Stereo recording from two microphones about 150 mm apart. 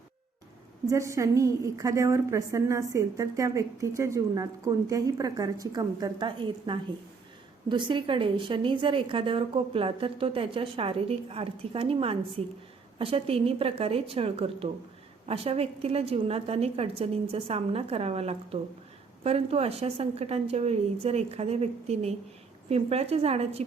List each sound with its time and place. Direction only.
0.9 s a woman's voice: 20° right (ahead or behind); by 23.6 s 45° right (ahead or behind)